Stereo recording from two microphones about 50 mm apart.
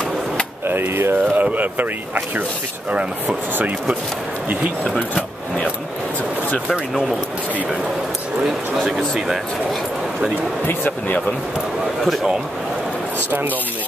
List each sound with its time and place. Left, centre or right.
0.7 s speech: right
2.9 s speech: right
10.7 s speech: left
12.0 s speech: centre